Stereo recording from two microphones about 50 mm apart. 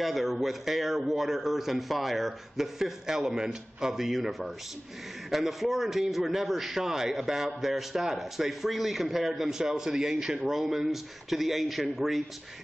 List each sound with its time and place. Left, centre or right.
0.0 s a man's voice: centre